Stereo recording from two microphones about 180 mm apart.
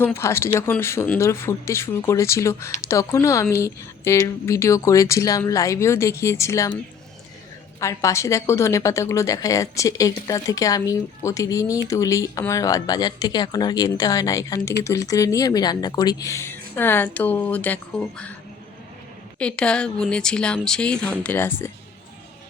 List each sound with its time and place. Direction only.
0.0 s a woman's voice: 15° left (ahead or behind)
7.8 s a woman's voice: 15° left (ahead or behind)
19.4 s speech: 5° left (ahead or behind)